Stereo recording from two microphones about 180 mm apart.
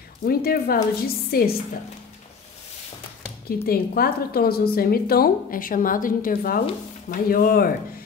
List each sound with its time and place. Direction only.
0.2 s a woman's voice: 55° left (ahead or behind)
3.4 s a woman's voice: 55° left (ahead or behind)